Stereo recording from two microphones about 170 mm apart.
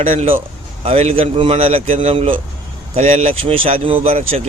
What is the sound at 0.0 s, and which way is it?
A man's voice, 40° right (ahead or behind).